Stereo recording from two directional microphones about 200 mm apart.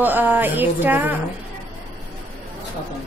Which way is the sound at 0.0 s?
10° right (ahead or behind).